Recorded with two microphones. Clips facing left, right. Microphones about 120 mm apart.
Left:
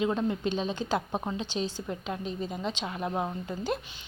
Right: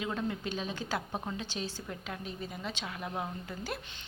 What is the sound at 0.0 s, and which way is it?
A woman's voice, 25° left (ahead or behind).